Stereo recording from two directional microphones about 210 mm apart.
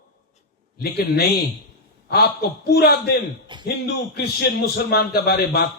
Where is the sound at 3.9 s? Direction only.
50° left (ahead or behind).